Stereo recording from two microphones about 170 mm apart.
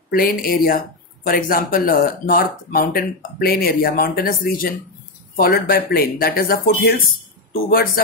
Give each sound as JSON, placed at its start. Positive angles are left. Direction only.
{"t": 0.1, "sound": "speech", "side_deg": 55}